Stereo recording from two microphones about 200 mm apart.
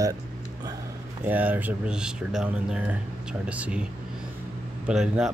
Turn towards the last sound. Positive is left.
turn(degrees=-5)  # may be behind; listen again after turning